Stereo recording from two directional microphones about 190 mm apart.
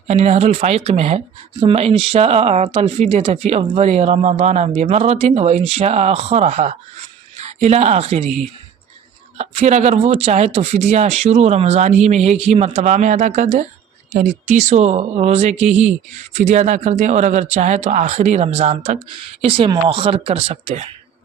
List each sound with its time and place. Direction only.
0.1 s speech: 35° right (ahead or behind)